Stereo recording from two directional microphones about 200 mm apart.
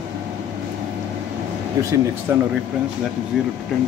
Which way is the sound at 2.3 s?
10° right (ahead or behind).